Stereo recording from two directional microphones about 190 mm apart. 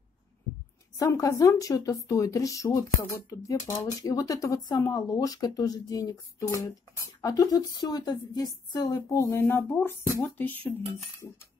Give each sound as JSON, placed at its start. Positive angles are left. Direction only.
{"t": 0.9, "sound": "speech", "side_deg": 15}
{"t": 7.2, "sound": "speech", "side_deg": 20}